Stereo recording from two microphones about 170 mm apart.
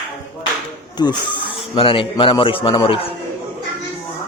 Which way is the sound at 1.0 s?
25° left (ahead or behind).